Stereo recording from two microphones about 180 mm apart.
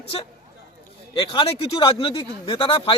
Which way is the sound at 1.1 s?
30° left (ahead or behind).